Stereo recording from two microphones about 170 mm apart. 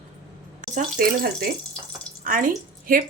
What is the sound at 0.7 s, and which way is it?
A woman's voice, 60° right (ahead or behind).